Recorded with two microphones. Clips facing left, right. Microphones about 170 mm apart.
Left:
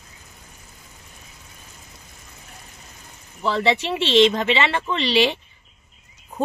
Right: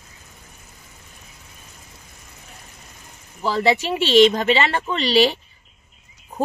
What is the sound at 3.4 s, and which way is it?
Speech, 40° right (ahead or behind).